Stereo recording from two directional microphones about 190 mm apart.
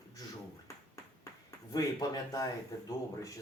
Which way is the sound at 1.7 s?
20° left (ahead or behind).